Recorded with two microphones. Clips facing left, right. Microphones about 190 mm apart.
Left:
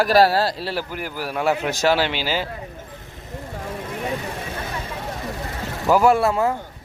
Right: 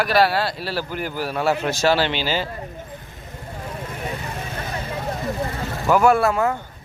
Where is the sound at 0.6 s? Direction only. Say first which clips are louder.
Even; 20° left (ahead or behind).